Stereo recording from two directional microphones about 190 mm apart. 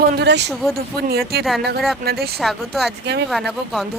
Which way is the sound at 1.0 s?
55° right (ahead or behind).